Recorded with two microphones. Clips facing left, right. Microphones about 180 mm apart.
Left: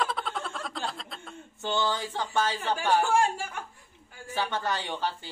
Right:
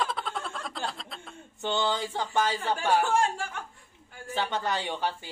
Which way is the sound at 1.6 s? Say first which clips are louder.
Right 1 dB; 20° right (ahead or behind).